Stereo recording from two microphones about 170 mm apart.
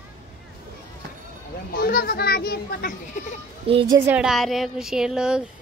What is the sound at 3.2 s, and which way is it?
Speech, 45° left (ahead or behind).